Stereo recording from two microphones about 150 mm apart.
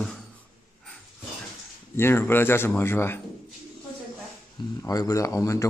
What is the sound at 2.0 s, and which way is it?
A man's voice, 15° left (ahead or behind).